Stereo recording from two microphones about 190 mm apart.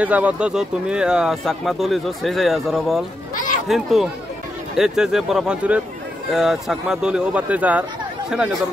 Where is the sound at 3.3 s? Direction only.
45° left (ahead or behind).